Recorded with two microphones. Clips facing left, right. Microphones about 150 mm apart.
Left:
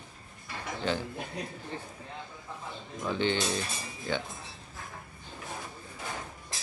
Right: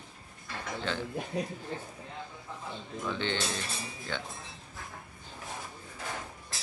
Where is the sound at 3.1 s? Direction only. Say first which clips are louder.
Left 5 dB; 15° left (ahead or behind).